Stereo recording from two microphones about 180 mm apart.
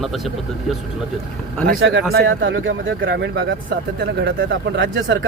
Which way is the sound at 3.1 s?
75° right (ahead or behind).